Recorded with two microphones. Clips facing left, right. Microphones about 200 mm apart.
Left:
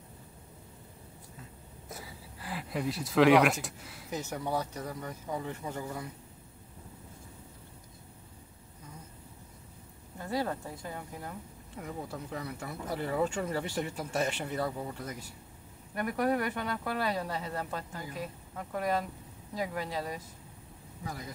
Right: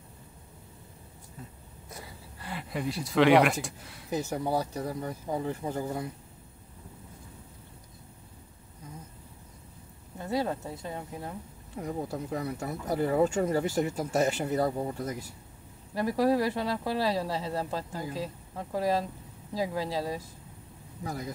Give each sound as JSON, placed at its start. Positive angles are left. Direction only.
{"t": 1.9, "sound": "a sound", "side_deg": 0}
{"t": 3.6, "sound": "speech", "side_deg": 0}
{"t": 4.1, "sound": "speech", "side_deg": -35}
{"t": 10.1, "sound": "speech", "side_deg": -20}
{"t": 11.8, "sound": "speech", "side_deg": -35}
{"t": 15.9, "sound": "speech", "side_deg": -30}